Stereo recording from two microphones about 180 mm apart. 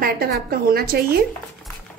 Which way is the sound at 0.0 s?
55° right (ahead or behind).